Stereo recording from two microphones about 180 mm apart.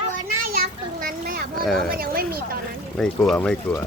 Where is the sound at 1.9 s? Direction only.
55° right (ahead or behind).